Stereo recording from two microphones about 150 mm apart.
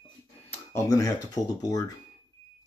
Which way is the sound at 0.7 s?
20° left (ahead or behind).